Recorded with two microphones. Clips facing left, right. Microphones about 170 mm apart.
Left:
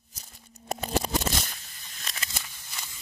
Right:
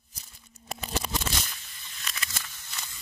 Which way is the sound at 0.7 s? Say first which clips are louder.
Left 5 dB; 45° left (ahead or behind).